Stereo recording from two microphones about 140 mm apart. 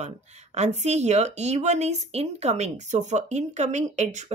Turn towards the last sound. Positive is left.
turn(degrees=-55)  # may be behind; listen again after turning